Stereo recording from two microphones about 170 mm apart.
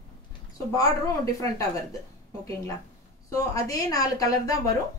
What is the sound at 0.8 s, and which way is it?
Speech, 20° left (ahead or behind).